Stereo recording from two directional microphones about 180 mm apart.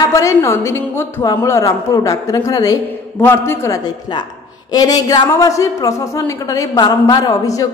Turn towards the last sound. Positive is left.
turn(degrees=20)  # may be behind; listen again after turning